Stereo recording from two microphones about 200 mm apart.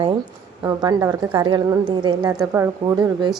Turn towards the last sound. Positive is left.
turn(degrees=-15)  # may be behind; listen again after turning